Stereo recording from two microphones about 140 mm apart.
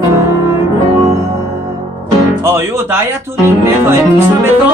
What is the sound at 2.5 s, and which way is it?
Music, 20° right (ahead or behind).